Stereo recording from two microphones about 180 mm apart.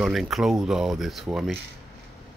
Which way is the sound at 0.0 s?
Centre (ahead or behind).